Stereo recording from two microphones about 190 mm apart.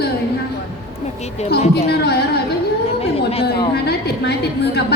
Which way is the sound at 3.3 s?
30° left (ahead or behind).